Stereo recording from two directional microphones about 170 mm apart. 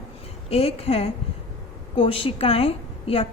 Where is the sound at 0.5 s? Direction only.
35° left (ahead or behind).